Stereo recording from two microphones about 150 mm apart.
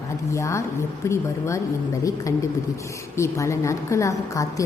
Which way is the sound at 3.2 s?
20° left (ahead or behind).